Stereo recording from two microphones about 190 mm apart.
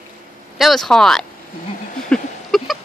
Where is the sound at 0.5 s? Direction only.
Centre (ahead or behind).